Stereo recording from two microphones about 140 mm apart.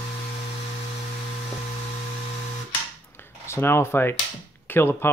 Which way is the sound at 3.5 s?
15° left (ahead or behind).